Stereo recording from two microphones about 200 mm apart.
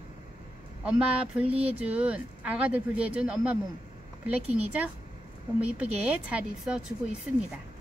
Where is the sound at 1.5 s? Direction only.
30° right (ahead or behind).